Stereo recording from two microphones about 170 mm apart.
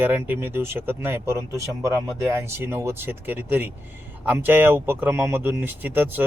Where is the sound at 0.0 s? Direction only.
10° right (ahead or behind).